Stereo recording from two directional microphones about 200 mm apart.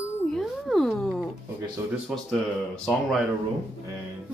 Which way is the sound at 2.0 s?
Centre (ahead or behind).